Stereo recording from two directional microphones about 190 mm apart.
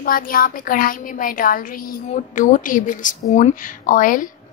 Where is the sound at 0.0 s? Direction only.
50° left (ahead or behind).